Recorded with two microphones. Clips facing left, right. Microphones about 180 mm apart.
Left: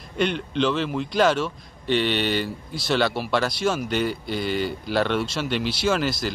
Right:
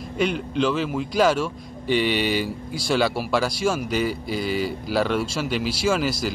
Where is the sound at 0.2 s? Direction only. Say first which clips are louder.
Even; 5° right (ahead or behind).